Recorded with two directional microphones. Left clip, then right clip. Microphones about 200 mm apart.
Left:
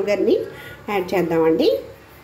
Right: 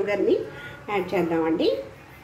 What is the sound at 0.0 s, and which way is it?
Speech, 15° left (ahead or behind).